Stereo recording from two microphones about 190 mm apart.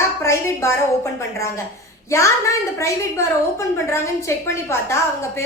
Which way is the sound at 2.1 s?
15° left (ahead or behind).